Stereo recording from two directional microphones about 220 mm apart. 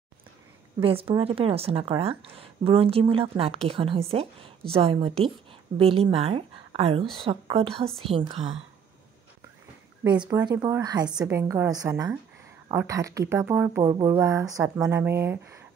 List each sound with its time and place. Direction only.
0.7 s speech: 25° right (ahead or behind)
10.4 s speech: 15° right (ahead or behind)
11.1 s speech: 5° right (ahead or behind)